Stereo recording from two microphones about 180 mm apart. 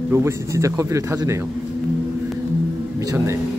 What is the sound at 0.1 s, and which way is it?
Speech, 15° right (ahead or behind).